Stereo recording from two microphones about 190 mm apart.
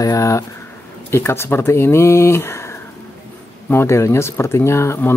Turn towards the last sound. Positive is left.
turn(degrees=15)  # may be behind; listen again after turning